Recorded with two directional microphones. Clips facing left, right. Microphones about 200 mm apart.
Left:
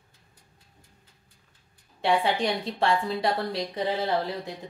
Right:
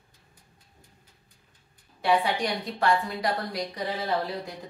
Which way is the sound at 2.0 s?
25° left (ahead or behind).